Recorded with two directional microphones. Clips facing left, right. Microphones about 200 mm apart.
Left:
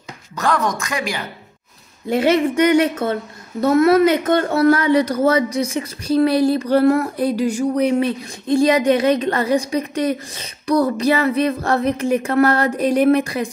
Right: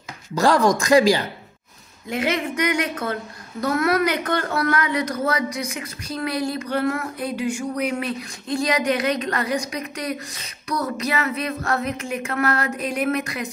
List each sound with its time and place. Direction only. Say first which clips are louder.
0.4 s speech: right 3 dB; 30° right (ahead or behind)
2.0 s speech: left 8 dB; 30° left (ahead or behind)